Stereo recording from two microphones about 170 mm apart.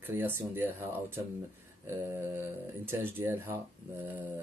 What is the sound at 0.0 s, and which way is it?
Speech, 10° right (ahead or behind).